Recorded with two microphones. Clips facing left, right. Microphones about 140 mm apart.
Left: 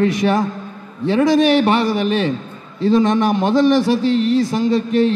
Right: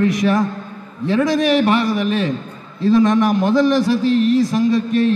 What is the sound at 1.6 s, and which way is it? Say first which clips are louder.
A man's voice: even; 25° left (ahead or behind).